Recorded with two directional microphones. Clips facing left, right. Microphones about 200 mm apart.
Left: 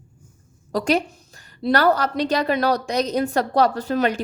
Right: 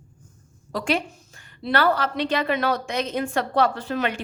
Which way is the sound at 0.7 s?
40° left (ahead or behind).